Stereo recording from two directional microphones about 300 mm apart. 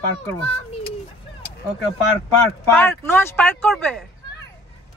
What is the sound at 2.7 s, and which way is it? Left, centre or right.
Speech, centre.